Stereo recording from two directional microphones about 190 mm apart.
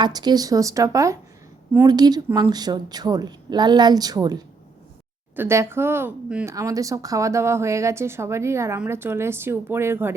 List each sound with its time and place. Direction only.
0.0 s speech: 20° right (ahead or behind)